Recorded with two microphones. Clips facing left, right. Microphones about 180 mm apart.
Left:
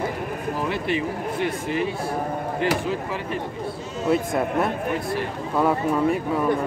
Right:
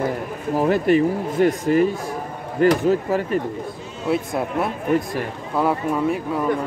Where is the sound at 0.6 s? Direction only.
45° right (ahead or behind).